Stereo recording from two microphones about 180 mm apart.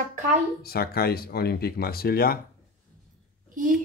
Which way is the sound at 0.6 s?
60° left (ahead or behind).